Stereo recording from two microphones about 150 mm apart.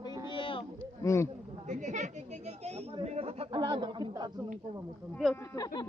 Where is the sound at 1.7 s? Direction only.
55° right (ahead or behind); by 4.3 s 30° right (ahead or behind).